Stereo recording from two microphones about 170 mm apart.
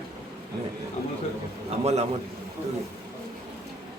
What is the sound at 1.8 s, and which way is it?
Speech, 40° right (ahead or behind).